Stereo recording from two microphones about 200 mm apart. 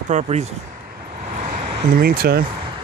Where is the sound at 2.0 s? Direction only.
50° right (ahead or behind).